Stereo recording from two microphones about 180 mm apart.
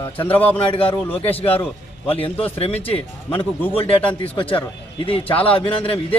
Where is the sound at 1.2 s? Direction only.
30° left (ahead or behind).